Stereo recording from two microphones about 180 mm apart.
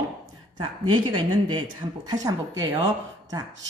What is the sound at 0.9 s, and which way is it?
A woman's voice, 25° right (ahead or behind).